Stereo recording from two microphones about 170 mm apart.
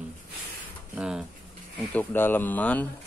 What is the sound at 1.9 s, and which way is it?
Speech, 10° left (ahead or behind).